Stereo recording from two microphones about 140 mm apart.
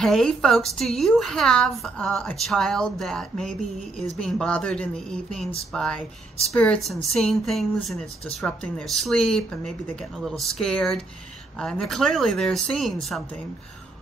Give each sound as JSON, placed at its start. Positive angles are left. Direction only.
{"t": 0.0, "sound": "a woman's voice", "side_deg": 5}